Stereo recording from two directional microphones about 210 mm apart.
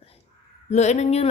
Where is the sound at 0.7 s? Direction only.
30° left (ahead or behind).